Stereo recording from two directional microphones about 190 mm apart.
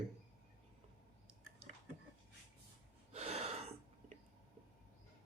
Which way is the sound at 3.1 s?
35° right (ahead or behind).